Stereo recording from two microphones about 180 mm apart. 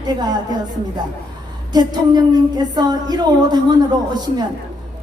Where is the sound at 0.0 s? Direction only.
20° right (ahead or behind).